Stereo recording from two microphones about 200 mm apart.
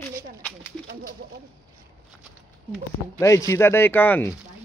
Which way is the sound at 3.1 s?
15° left (ahead or behind).